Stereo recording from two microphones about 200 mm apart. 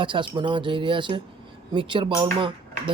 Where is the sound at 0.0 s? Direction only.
25° right (ahead or behind).